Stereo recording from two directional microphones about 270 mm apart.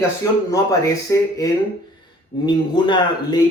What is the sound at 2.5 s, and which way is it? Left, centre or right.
Speech, centre.